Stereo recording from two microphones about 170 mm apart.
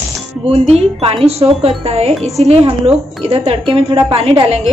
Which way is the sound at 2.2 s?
Centre (ahead or behind).